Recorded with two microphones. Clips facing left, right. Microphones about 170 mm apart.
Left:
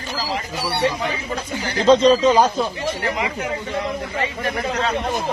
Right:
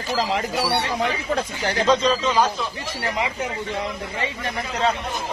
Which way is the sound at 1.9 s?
35° left (ahead or behind).